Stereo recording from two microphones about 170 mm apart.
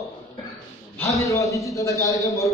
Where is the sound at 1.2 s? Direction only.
20° left (ahead or behind).